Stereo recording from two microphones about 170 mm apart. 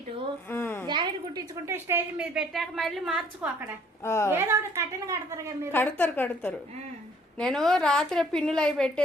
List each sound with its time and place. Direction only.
0.5 s a sound: 15° left (ahead or behind)
0.9 s a woman's voice: 25° right (ahead or behind); by 3.7 s 5° right (ahead or behind)
4.0 s a woman's voice: 15° left (ahead or behind)
4.3 s a woman's voice: 15° right (ahead or behind)
5.7 s a woman's voice: 10° left (ahead or behind)